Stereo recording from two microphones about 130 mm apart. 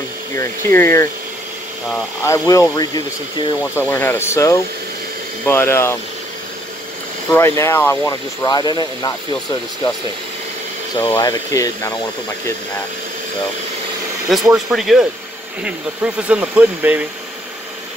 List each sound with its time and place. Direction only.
0.4 s speech: 20° left (ahead or behind)
2.2 s speech: 25° left (ahead or behind)
3.7 s speech: 15° left (ahead or behind)
7.2 s speech: 20° left (ahead or behind)
11.0 s speech: 35° left (ahead or behind)
11.5 s speech: 25° left (ahead or behind)
14.5 s speech: 5° right (ahead or behind)